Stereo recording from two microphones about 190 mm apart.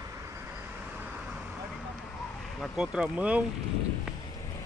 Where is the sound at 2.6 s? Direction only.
5° right (ahead or behind).